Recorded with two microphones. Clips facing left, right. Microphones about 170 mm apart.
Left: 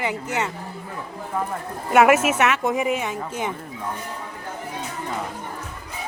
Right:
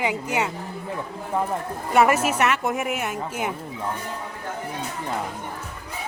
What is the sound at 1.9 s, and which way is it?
Speech, 5° left (ahead or behind).